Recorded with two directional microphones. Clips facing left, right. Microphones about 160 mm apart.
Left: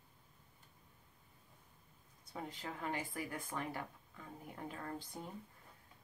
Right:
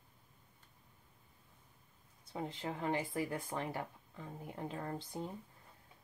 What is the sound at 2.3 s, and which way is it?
Speech, 25° right (ahead or behind).